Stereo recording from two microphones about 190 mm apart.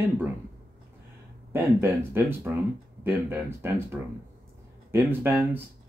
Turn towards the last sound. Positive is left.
turn(degrees=-10)  # may be behind; listen again after turning